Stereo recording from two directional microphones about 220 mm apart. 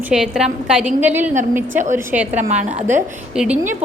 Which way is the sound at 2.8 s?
10° right (ahead or behind).